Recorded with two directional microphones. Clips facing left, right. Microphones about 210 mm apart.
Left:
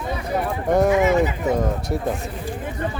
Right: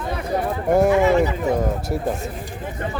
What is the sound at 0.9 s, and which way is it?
Speech, 20° left (ahead or behind).